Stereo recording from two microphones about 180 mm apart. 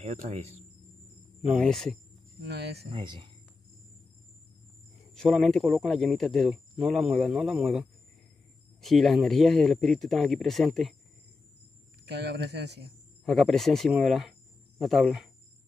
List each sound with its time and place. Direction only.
0.0 s speech: 40° right (ahead or behind)
1.5 s speech: centre (ahead or behind)
2.4 s speech: 65° right (ahead or behind)
2.9 s speech: 25° right (ahead or behind)
5.1 s speech: centre (ahead or behind)
8.8 s speech: centre (ahead or behind)
12.1 s speech: 65° right (ahead or behind)
13.2 s speech: centre (ahead or behind)